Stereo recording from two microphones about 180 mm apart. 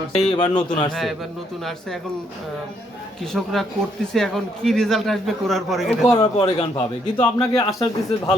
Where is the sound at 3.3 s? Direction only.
Centre (ahead or behind).